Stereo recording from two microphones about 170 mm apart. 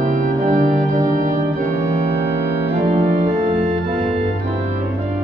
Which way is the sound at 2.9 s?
40° right (ahead or behind).